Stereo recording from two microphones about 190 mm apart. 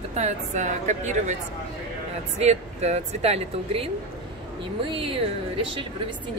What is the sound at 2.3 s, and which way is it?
Speech, 35° right (ahead or behind).